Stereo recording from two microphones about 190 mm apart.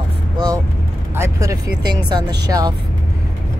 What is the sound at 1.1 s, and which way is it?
Speech, 15° right (ahead or behind).